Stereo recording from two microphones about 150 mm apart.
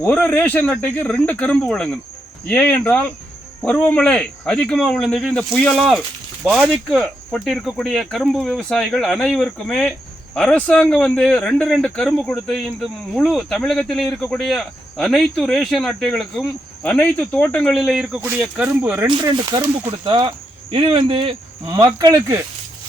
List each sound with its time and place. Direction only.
0.0 s speech: 10° left (ahead or behind); by 19.1 s 10° right (ahead or behind)
19.1 s speech: 30° right (ahead or behind)